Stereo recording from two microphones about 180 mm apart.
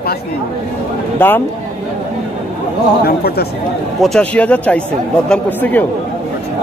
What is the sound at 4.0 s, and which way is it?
Speech, 5° left (ahead or behind).